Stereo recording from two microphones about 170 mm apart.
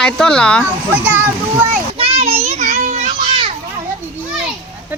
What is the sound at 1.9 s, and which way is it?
Children playing, 35° right (ahead or behind).